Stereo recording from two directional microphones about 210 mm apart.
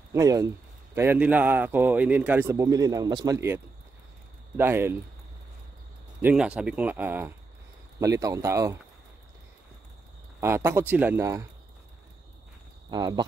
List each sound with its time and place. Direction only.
0.1 s speech: 15° right (ahead or behind)
6.2 s speech: 5° right (ahead or behind)
10.4 s speech: 10° right (ahead or behind)
12.9 s speech: 20° right (ahead or behind)